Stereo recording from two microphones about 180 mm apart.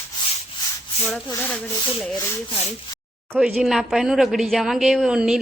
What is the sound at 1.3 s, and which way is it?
Rub, 10° left (ahead or behind).